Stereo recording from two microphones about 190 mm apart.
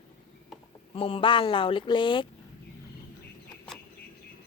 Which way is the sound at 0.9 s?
30° left (ahead or behind).